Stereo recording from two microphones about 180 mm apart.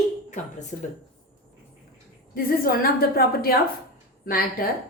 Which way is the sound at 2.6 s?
55° left (ahead or behind).